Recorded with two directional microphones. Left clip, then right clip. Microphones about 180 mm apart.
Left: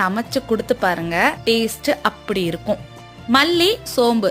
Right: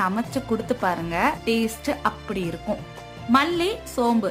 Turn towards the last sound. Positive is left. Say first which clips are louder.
# left 6 dB
turn(degrees=20)  # may be behind; listen again after turning